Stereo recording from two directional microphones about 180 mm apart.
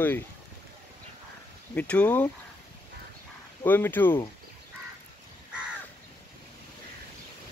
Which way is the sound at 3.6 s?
10° left (ahead or behind).